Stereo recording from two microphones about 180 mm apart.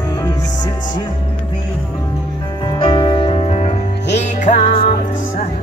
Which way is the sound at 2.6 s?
25° left (ahead or behind).